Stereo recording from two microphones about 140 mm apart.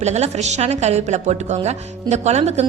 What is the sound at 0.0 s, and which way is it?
A woman's voice, 55° right (ahead or behind).